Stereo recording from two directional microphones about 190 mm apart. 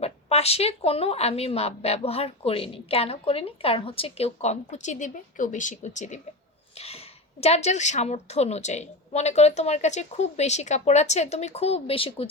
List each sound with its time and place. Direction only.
0.0 s speech: 35° left (ahead or behind)